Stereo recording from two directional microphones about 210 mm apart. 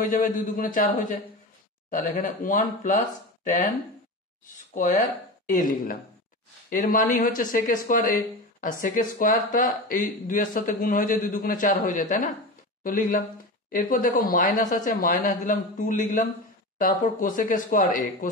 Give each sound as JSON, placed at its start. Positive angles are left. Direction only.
{"t": 0.0, "sound": "speech", "side_deg": 40}
{"t": 5.5, "sound": "speech", "side_deg": 40}